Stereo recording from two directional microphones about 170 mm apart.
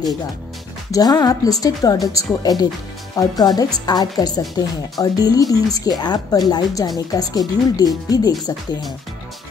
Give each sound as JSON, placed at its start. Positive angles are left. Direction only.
{"t": 0.9, "sound": "a woman's voice", "side_deg": 20}